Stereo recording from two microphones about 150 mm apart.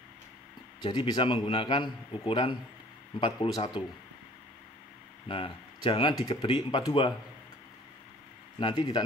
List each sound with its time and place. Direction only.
0.7 s a man's voice: 30° left (ahead or behind)
5.3 s a man's voice: 35° left (ahead or behind)
8.5 s a man's voice: 30° left (ahead or behind)